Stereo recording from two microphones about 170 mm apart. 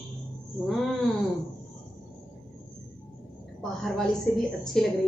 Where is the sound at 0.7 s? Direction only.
Centre (ahead or behind).